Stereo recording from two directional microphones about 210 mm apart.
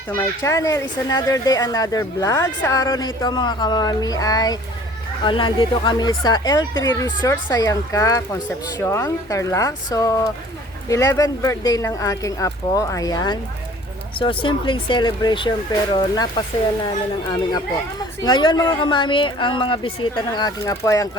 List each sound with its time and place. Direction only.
0.1 s speech: 10° left (ahead or behind)
18.2 s speech: 20° left (ahead or behind)